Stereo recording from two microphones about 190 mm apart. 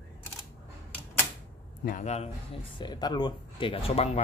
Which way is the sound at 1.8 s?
40° left (ahead or behind).